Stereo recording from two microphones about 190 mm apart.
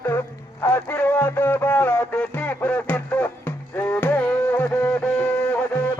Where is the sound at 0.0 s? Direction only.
15° left (ahead or behind).